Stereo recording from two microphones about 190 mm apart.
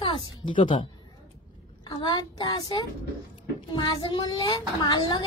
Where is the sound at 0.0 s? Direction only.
25° left (ahead or behind).